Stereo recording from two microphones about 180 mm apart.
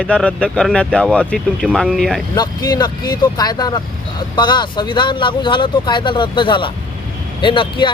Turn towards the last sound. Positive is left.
turn(degrees=25)  # may be behind; listen again after turning